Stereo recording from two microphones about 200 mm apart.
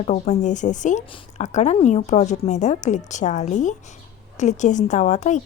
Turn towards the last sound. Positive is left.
turn(degrees=35)  # may be behind; listen again after turning